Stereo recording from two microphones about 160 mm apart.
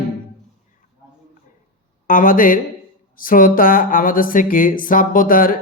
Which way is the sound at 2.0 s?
60° left (ahead or behind).